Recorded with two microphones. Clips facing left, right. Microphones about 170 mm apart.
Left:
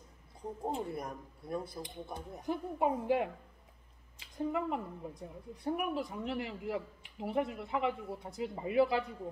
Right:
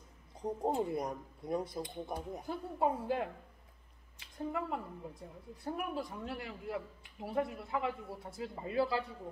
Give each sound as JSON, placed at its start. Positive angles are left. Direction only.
{"t": 0.4, "sound": "speech", "side_deg": -20}
{"t": 2.4, "sound": "a woman's voice", "side_deg": 15}